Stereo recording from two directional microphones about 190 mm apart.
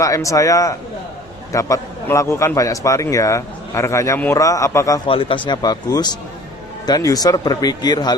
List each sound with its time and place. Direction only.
0.0 s a man's voice: 15° left (ahead or behind)
5.0 s speech: 30° left (ahead or behind)